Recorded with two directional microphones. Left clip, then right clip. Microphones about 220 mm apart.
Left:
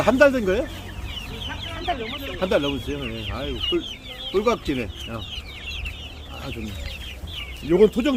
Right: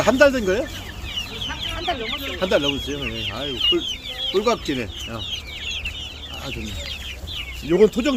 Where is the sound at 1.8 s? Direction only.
25° right (ahead or behind).